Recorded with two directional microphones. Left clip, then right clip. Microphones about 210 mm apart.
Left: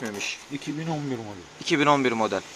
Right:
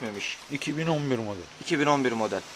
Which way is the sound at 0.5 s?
35° right (ahead or behind).